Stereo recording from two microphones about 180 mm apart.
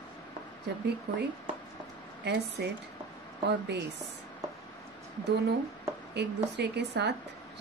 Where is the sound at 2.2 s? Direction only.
65° right (ahead or behind).